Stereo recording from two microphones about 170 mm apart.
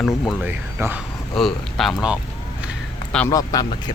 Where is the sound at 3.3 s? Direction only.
20° left (ahead or behind).